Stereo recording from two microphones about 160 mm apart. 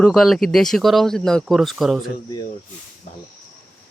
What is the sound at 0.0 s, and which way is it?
Speech, centre (ahead or behind).